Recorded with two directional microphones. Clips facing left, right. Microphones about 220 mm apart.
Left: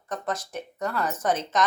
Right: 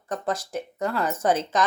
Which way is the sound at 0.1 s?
30° right (ahead or behind).